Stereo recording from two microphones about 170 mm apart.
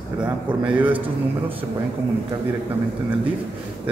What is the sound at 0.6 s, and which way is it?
Speech, 10° right (ahead or behind).